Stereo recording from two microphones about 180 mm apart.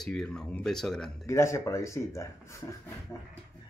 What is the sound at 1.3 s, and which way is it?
Speech, 15° left (ahead or behind).